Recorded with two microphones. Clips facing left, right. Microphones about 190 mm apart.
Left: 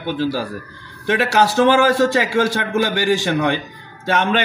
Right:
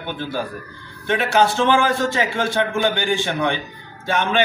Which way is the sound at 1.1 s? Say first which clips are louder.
Left 1 dB; 70° left (ahead or behind).